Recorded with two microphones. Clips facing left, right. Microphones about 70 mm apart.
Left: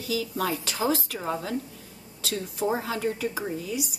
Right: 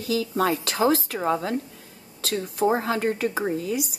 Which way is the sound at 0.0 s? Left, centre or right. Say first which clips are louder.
Right 5 dB; right.